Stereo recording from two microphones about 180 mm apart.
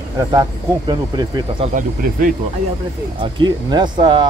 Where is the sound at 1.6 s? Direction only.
45° right (ahead or behind).